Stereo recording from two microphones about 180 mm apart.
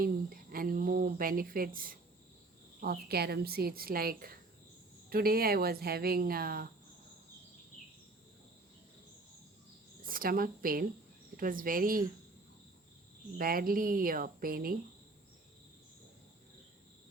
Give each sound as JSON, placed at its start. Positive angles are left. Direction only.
{"t": 0.0, "sound": "speech", "side_deg": -55}
{"t": 10.0, "sound": "speech", "side_deg": -50}
{"t": 13.4, "sound": "speech", "side_deg": -55}